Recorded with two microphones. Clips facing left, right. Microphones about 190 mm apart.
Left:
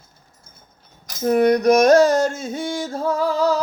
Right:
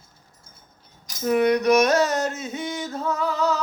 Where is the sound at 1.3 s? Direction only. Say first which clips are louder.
Left 4 dB; 40° left (ahead or behind).